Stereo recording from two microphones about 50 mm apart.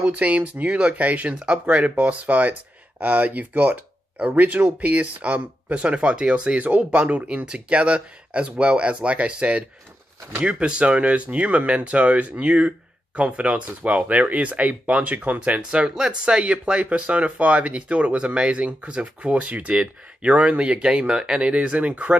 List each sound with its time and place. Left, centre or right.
0.0 s speech: right
1.4 s speech: centre